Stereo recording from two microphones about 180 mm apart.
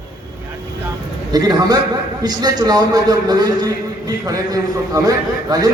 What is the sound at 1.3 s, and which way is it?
A man's voice, 20° right (ahead or behind).